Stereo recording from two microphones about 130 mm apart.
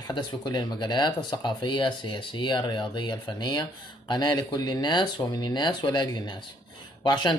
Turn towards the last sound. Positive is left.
turn(degrees=35)  # may be behind; listen again after turning